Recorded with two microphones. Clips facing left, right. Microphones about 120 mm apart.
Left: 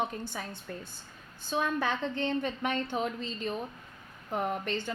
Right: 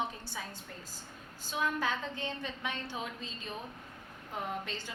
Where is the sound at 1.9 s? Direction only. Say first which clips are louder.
Left 6 dB; 55° left (ahead or behind).